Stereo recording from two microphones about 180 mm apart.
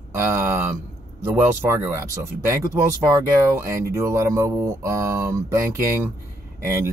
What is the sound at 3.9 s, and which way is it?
Speech, 15° right (ahead or behind).